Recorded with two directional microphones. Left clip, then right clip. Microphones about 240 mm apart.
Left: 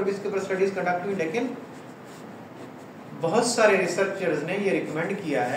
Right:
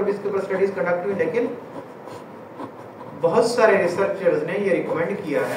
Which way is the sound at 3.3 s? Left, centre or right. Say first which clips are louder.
Right 4 dB; centre.